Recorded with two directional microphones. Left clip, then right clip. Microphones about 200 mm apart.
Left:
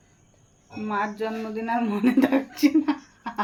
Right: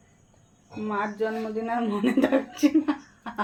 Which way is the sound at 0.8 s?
20° left (ahead or behind).